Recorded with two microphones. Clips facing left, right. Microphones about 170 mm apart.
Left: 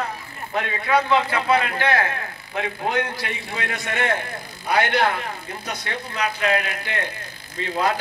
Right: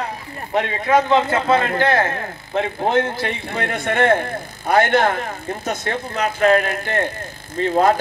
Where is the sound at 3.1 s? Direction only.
55° right (ahead or behind).